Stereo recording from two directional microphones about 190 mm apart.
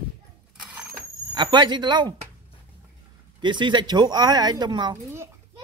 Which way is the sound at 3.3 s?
25° right (ahead or behind).